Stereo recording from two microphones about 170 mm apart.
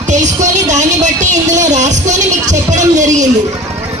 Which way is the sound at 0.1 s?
45° right (ahead or behind).